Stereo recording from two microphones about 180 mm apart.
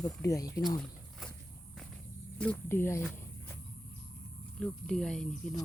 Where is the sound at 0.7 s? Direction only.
5° left (ahead or behind).